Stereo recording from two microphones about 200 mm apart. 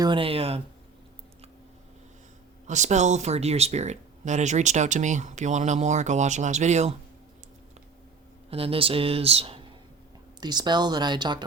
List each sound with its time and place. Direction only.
0.0 s speech: 25° right (ahead or behind)
2.6 s speech: 35° right (ahead or behind)
8.4 s speech: 30° right (ahead or behind)